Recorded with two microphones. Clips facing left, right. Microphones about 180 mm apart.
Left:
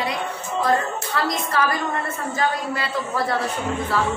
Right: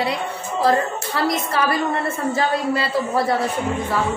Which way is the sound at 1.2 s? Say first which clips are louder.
Right 3 dB; 25° right (ahead or behind).